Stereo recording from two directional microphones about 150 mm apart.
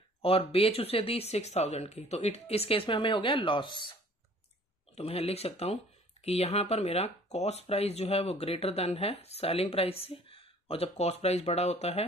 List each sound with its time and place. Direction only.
0.2 s speech: 40° left (ahead or behind)
4.9 s speech: 40° left (ahead or behind)